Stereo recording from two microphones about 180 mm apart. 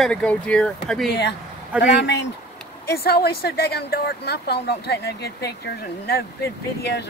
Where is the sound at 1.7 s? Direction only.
10° right (ahead or behind).